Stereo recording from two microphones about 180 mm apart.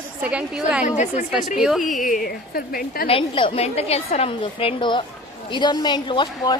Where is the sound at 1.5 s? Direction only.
Centre (ahead or behind).